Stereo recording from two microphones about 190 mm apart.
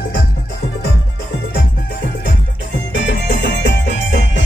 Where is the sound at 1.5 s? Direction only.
50° left (ahead or behind).